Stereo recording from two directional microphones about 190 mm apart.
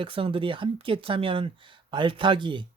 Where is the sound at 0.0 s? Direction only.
30° right (ahead or behind).